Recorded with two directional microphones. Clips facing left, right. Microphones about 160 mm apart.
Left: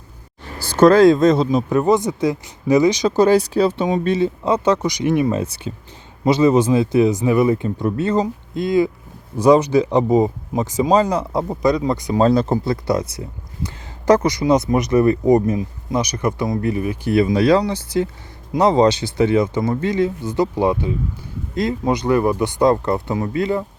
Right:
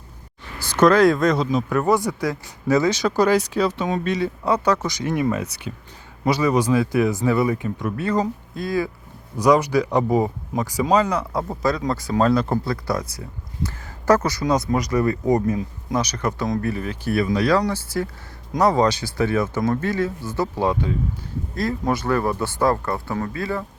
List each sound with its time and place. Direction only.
0.6 s speech: 30° left (ahead or behind)
7.5 s speech: 30° left (ahead or behind)
11.4 s speech: 15° left (ahead or behind)